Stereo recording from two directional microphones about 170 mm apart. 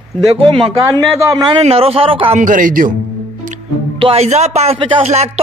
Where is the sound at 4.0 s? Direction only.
35° right (ahead or behind).